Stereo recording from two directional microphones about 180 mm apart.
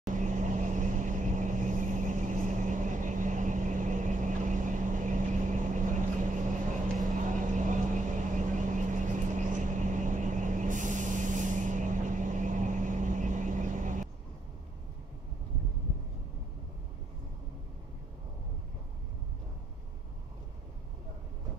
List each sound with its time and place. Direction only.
0.1 s vehicle: 45° right (ahead or behind)